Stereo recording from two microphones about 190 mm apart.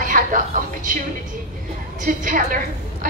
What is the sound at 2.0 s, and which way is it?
Speech, 45° right (ahead or behind).